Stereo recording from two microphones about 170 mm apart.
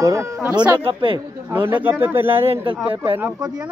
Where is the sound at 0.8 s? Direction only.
30° right (ahead or behind).